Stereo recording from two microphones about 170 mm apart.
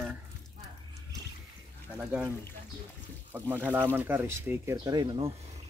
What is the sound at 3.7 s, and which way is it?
Speech, 10° right (ahead or behind).